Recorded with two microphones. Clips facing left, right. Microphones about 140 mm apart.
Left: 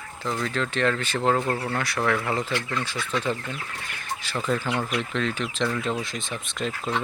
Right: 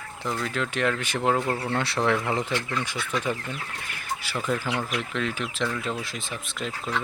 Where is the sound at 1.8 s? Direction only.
25° right (ahead or behind); by 6.7 s 5° right (ahead or behind).